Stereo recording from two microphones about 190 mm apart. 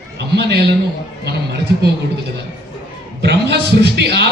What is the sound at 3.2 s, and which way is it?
A man's voice, 60° right (ahead or behind).